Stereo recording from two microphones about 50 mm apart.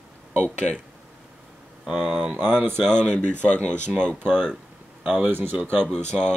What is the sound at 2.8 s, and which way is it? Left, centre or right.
Speech, centre.